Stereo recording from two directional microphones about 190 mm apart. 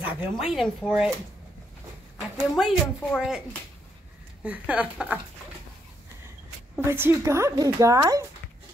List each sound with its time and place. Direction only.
0.0 s speech: 5° right (ahead or behind)
2.1 s speech: 5° right (ahead or behind)
6.8 s speech: 15° right (ahead or behind)